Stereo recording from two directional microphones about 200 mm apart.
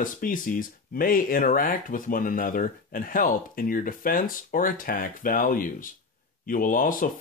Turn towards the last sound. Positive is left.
turn(degrees=40)  # may be behind; listen again after turning